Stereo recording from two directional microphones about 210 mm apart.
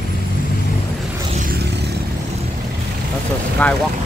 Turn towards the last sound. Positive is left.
turn(degrees=5)  # may be behind; listen again after turning